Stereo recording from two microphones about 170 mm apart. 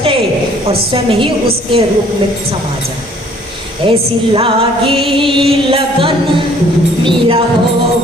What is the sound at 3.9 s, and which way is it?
A woman's voice, 30° right (ahead or behind).